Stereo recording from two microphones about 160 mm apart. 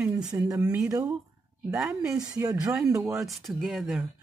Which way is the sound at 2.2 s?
20° right (ahead or behind).